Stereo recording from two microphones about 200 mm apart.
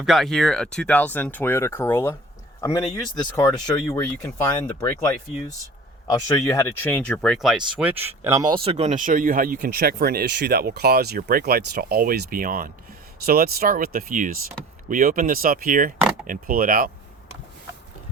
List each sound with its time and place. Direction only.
0.0 s speech: centre (ahead or behind)
6.1 s speech: 20° left (ahead or behind); by 16.9 s 45° right (ahead or behind)